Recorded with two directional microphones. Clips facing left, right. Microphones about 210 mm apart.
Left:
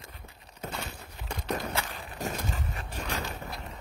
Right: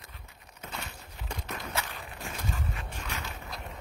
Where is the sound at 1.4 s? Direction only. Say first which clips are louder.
Left 6 dB; 35° left (ahead or behind).